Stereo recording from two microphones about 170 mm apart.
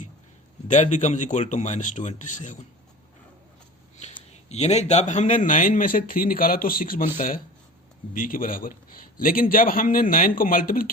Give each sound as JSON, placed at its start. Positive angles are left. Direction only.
{"t": 0.7, "sound": "speech", "side_deg": 45}
{"t": 4.1, "sound": "a man's voice", "side_deg": 40}